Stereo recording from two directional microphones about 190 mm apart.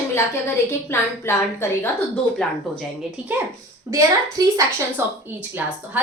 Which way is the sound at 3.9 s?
15° right (ahead or behind).